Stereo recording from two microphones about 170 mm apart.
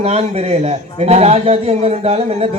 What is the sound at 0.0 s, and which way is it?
A man's voice, 40° right (ahead or behind).